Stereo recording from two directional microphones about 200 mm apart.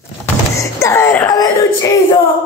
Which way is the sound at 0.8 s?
15° left (ahead or behind).